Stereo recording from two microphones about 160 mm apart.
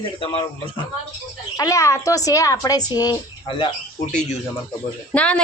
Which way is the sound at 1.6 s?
20° left (ahead or behind).